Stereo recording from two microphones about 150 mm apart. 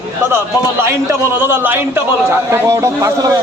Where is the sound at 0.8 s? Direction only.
15° right (ahead or behind).